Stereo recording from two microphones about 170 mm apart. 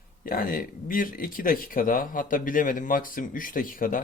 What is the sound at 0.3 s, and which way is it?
Speech, 55° left (ahead or behind).